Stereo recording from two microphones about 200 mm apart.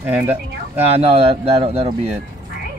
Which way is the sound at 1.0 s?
30° right (ahead or behind).